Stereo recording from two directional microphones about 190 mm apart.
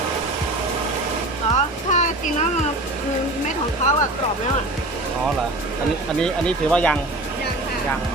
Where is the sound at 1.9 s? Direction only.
40° left (ahead or behind).